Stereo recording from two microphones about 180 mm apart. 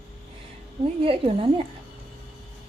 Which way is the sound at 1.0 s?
30° right (ahead or behind).